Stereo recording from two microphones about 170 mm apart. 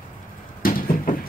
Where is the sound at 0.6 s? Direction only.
55° left (ahead or behind).